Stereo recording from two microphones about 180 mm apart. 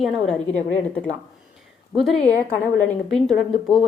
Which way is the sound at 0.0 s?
5° left (ahead or behind).